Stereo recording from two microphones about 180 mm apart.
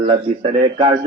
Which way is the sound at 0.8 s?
25° right (ahead or behind).